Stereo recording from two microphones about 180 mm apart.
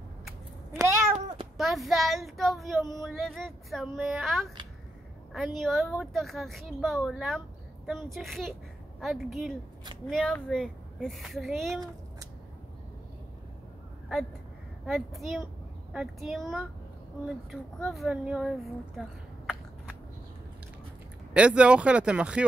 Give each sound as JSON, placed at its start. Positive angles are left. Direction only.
{"t": 0.7, "sound": "cat", "side_deg": -15}
{"t": 1.6, "sound": "a woman's voice", "side_deg": 0}
{"t": 14.9, "sound": "a woman's voice", "side_deg": 0}
{"t": 21.3, "sound": "a woman's voice", "side_deg": -5}